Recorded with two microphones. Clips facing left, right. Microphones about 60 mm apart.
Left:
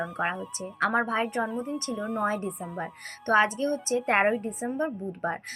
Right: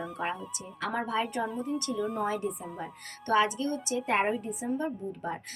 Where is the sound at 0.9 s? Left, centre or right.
Left.